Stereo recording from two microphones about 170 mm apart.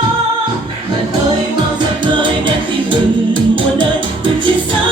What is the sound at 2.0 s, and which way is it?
Music, 30° right (ahead or behind).